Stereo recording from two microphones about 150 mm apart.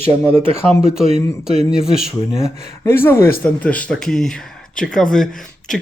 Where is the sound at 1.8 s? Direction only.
5° right (ahead or behind).